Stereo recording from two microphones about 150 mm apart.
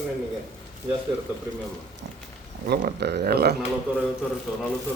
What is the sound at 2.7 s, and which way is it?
Speech, 85° right.